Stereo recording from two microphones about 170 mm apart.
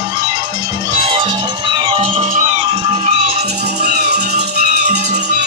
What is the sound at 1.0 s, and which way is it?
Music, 30° right (ahead or behind).